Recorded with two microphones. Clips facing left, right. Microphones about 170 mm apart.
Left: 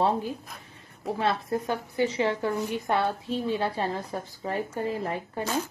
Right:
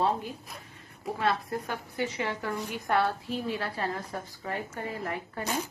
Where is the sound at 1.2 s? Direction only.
25° left (ahead or behind).